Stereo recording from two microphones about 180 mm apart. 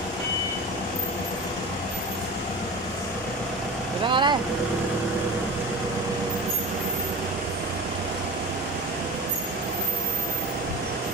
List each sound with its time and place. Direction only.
4.1 s vehicle: 25° right (ahead or behind)